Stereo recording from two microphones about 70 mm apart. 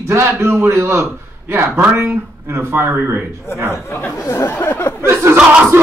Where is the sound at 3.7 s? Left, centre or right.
Left.